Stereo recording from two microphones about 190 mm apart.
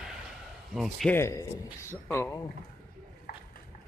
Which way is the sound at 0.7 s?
Centre (ahead or behind).